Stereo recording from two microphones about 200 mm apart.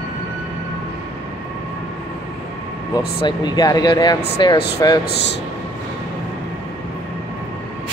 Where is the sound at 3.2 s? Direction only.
20° left (ahead or behind).